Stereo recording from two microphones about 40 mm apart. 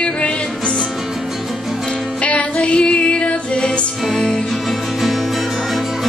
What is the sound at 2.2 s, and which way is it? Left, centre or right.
Music, left.